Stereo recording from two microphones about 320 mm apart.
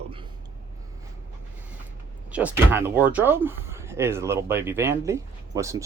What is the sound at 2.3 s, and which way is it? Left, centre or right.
Speech, centre.